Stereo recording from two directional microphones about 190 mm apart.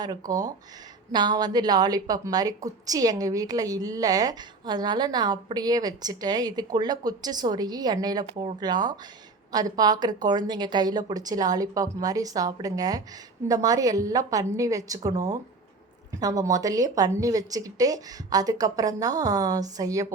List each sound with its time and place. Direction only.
0.0 s a woman's voice: 20° right (ahead or behind)